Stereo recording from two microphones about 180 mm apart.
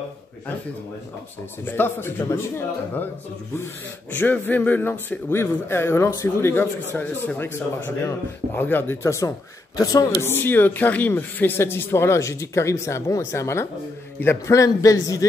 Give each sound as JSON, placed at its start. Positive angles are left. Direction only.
{"t": 1.6, "sound": "speech", "side_deg": 10}